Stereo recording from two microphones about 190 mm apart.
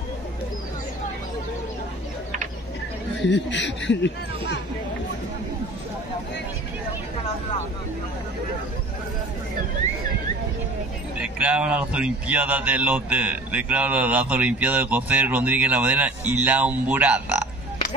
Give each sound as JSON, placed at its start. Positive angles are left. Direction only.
{"t": 3.2, "sound": "speech", "side_deg": 70}
{"t": 11.1, "sound": "speech", "side_deg": -10}